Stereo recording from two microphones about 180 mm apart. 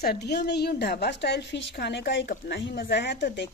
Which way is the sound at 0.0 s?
60° left (ahead or behind).